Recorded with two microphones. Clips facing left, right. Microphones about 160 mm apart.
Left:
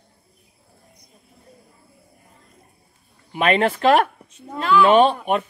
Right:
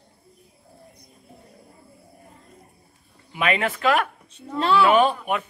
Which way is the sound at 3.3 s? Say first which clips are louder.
Left 5 dB; 35° left (ahead or behind).